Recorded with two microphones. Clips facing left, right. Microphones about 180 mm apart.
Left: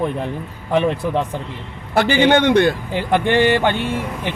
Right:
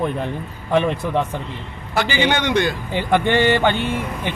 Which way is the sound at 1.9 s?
55° left (ahead or behind).